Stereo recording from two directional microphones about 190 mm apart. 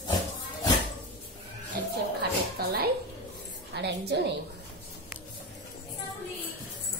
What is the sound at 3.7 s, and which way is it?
Speech, 60° right (ahead or behind).